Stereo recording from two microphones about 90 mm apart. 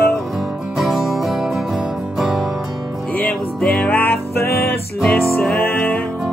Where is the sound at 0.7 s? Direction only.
5° right (ahead or behind).